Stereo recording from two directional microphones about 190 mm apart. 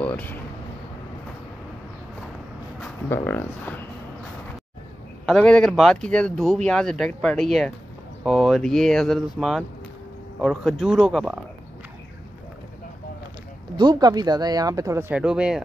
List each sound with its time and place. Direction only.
0.0 s a sound: 10° left (ahead or behind)
3.1 s speech: 10° left (ahead or behind)
5.2 s speech: 5° left (ahead or behind)
13.7 s speech: 20° right (ahead or behind); by 15.6 s 5° right (ahead or behind)